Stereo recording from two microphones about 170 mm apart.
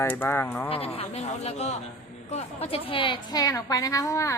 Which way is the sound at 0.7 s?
35° left (ahead or behind).